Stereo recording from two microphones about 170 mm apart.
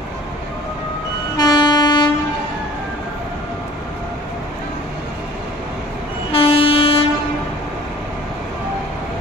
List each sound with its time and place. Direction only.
1.3 s train: 25° left (ahead or behind)
6.3 s train: 35° left (ahead or behind)